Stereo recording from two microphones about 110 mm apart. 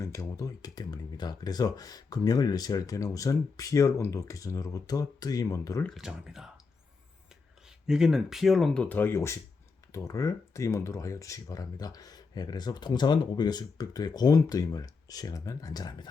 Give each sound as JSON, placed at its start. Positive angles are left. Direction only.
{"t": 0.0, "sound": "speech", "side_deg": 25}
{"t": 6.0, "sound": "speech", "side_deg": -5}
{"t": 7.9, "sound": "speech", "side_deg": -5}